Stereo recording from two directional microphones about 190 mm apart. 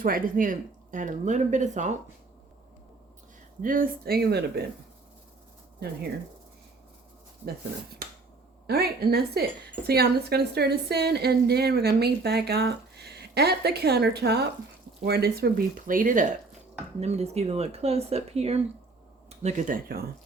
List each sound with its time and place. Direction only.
0.0 s speech: 45° right (ahead or behind)
3.6 s a woman's voice: 45° right (ahead or behind)
8.6 s a woman's voice: 55° right (ahead or behind)
17.0 s speech: 35° right (ahead or behind)